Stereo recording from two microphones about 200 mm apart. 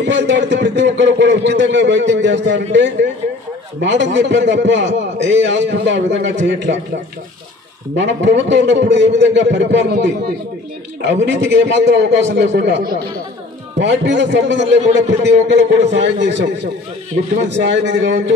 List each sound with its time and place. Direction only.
0.0 s a man's voice: 60° right (ahead or behind)
7.9 s a man's voice: 65° right (ahead or behind)
17.5 s a man's voice: 60° right (ahead or behind)